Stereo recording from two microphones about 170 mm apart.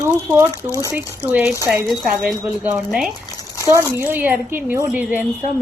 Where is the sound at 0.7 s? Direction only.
20° left (ahead or behind).